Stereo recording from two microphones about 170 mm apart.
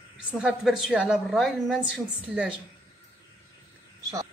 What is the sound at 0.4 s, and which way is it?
A woman's voice, 5° right (ahead or behind).